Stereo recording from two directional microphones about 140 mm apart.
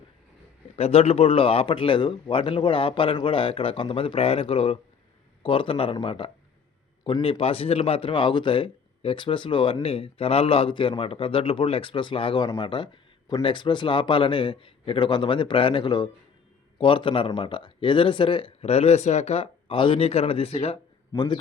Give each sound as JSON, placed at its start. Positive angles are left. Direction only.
{"t": 0.8, "sound": "a man's voice", "side_deg": 45}
{"t": 21.1, "sound": "a man's voice", "side_deg": 30}